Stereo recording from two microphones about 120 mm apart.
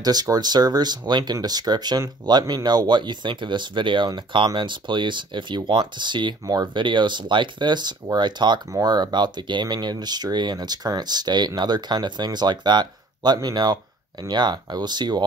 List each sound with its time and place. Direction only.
0.0 s speech: 35° right (ahead or behind)